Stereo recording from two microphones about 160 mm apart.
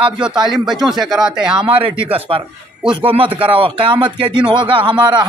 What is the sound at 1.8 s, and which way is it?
Speech, 35° right (ahead or behind).